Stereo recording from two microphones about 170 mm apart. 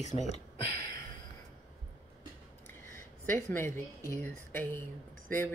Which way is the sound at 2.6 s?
15° left (ahead or behind).